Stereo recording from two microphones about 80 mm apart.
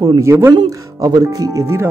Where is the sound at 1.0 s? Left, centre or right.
Right.